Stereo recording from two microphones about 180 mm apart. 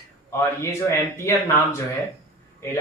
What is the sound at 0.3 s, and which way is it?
Speech, 15° left (ahead or behind).